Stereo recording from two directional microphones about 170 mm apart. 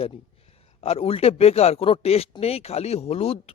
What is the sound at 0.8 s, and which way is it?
Speech, 35° left (ahead or behind).